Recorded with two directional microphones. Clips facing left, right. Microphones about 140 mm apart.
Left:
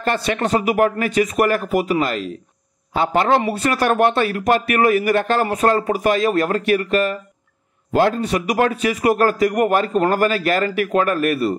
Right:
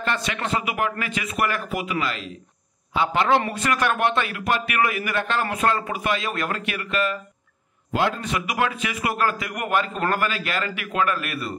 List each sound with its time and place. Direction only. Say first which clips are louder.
0.0 s a man's voice: left 7 dB; 35° left (ahead or behind)